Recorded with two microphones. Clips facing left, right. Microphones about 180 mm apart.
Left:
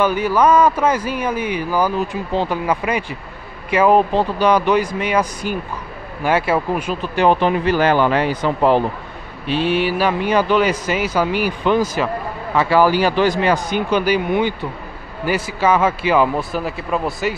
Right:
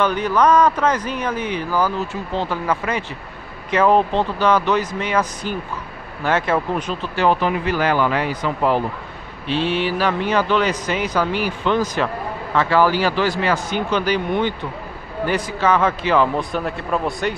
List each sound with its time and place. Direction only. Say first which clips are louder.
0.0 s a man's voice: left 2 dB; 10° left (ahead or behind); by 8.8 s 25° left (ahead or behind)
9.5 s a man's voice: left 2 dB; 10° left (ahead or behind)